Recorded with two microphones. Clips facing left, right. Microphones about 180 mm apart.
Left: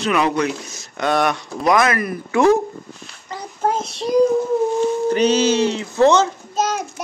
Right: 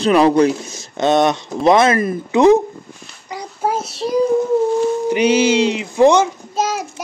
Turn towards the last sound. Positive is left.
turn(degrees=-10)  # may be behind; listen again after turning